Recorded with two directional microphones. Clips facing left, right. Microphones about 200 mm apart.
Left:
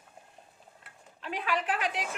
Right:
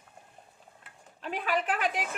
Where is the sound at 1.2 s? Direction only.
40° right (ahead or behind).